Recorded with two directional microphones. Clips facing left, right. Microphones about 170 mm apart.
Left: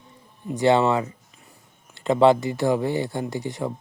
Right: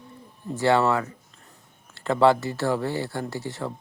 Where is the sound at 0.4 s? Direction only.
20° left (ahead or behind).